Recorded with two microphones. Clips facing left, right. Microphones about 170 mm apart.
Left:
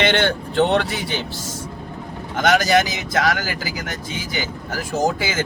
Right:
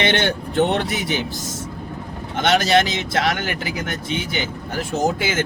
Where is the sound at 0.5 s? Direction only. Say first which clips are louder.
Left 1 dB; 20° right (ahead or behind).